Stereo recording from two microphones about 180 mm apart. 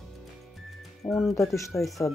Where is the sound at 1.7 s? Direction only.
10° left (ahead or behind).